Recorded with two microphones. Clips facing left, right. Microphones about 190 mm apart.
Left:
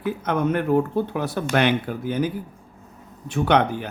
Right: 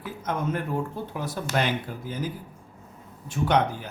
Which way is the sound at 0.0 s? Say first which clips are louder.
Left 7 dB; 65° left (ahead or behind).